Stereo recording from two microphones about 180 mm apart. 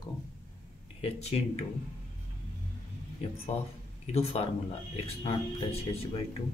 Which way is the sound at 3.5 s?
35° left (ahead or behind).